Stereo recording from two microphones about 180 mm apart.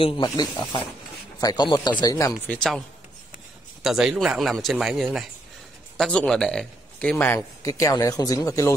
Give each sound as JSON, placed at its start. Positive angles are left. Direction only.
{"t": 0.0, "sound": "speech", "side_deg": 25}
{"t": 2.4, "sound": "speech", "side_deg": 5}
{"t": 3.8, "sound": "a man's voice", "side_deg": -5}